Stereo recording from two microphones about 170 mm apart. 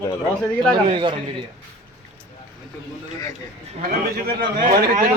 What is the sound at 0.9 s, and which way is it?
Speech, 30° right (ahead or behind).